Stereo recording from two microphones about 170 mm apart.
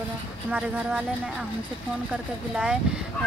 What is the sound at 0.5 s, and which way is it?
Speech, 10° right (ahead or behind).